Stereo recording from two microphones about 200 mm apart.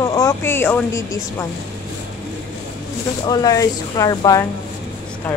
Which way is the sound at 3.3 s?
20° left (ahead or behind).